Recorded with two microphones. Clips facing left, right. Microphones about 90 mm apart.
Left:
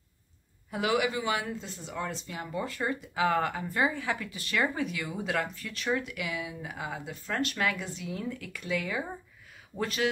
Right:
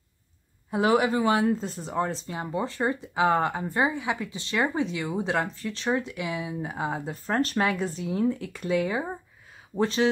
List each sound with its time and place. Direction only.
0.7 s speech: 30° right (ahead or behind)